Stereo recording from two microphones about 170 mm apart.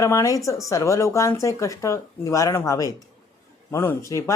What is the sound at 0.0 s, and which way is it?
Speech, 15° left (ahead or behind).